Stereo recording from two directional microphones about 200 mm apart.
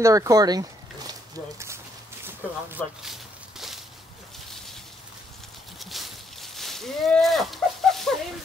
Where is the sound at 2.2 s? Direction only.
10° right (ahead or behind).